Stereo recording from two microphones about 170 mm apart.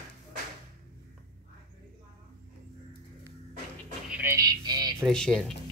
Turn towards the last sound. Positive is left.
turn(degrees=5)  # may be behind; listen again after turning